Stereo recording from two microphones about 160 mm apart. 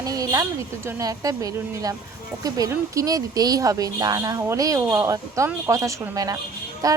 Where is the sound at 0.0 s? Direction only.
20° right (ahead or behind).